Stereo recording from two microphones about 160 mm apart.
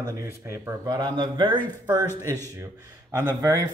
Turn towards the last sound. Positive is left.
turn(degrees=-20)  # may be behind; listen again after turning